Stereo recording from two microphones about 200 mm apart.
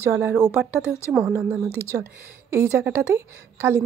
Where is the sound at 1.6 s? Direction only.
10° left (ahead or behind).